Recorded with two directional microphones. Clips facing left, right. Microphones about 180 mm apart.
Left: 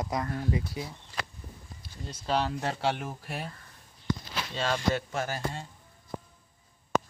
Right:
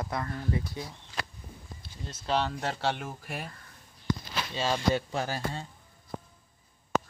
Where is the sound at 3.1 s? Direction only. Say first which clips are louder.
Left 1 dB; 5° right (ahead or behind).